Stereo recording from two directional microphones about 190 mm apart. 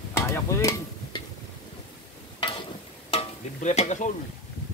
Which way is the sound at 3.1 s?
35° left (ahead or behind).